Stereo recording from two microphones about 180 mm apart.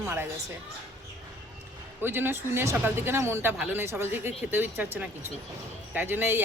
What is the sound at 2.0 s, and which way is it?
Speech, 10° right (ahead or behind).